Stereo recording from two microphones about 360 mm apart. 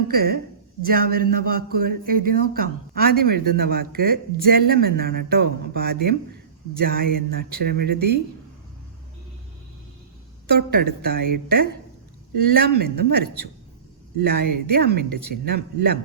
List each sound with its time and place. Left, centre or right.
0.1 s a woman's voice: right
7.9 s speech: right
10.5 s speech: right